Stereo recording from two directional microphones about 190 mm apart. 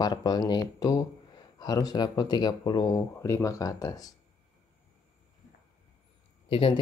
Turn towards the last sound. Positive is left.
turn(degrees=30)  # may be behind; listen again after turning